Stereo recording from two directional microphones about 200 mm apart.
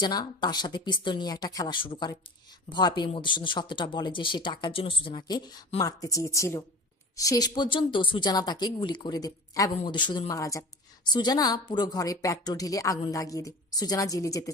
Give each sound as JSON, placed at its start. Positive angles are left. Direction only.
{"t": 0.0, "sound": "a woman's voice", "side_deg": 20}